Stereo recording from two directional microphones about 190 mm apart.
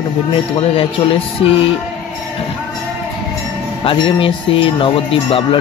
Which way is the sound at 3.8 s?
30° left (ahead or behind).